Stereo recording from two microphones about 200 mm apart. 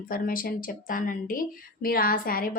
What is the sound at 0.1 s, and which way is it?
Speech, 45° left (ahead or behind).